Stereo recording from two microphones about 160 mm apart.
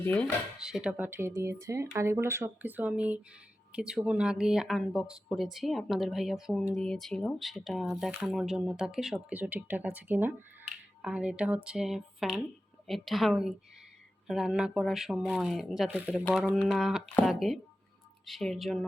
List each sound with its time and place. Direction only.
0.0 s speech: 10° left (ahead or behind)
0.6 s speech: 5° right (ahead or behind)